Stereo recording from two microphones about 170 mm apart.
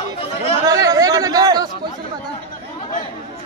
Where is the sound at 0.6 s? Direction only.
20° right (ahead or behind).